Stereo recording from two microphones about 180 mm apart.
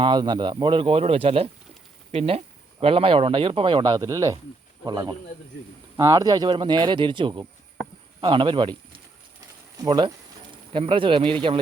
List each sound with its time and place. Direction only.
0.0 s speech: 25° right (ahead or behind)